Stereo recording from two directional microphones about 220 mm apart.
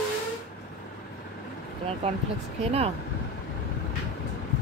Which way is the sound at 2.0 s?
25° right (ahead or behind).